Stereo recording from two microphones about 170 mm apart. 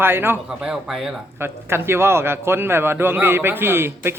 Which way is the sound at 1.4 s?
15° right (ahead or behind).